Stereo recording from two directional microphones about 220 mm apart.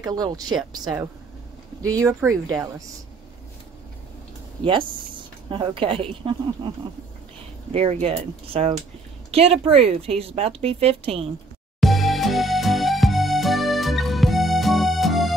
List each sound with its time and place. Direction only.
0.0 s speech: 15° right (ahead or behind)
5.5 s a woman's voice: 25° right (ahead or behind)
7.7 s a woman's voice: 25° right (ahead or behind)
9.3 s a woman's voice: 25° right (ahead or behind)
11.8 s music: centre (ahead or behind)